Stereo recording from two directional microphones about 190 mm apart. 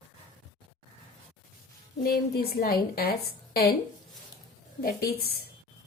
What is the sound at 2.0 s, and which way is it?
A woman's voice, 55° left (ahead or behind).